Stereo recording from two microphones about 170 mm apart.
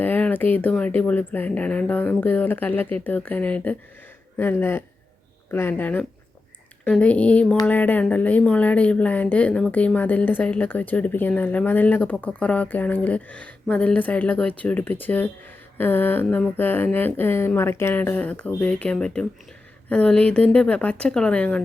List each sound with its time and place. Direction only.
0.0 s speech: 10° left (ahead or behind)